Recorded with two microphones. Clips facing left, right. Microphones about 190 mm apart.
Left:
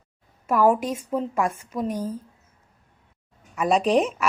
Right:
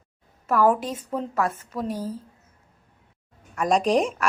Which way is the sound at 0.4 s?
10° left (ahead or behind).